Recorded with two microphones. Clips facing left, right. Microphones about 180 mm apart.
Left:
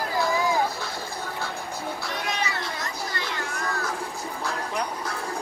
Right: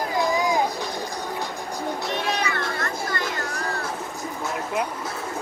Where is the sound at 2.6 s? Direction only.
55° right (ahead or behind); by 3.8 s 35° right (ahead or behind).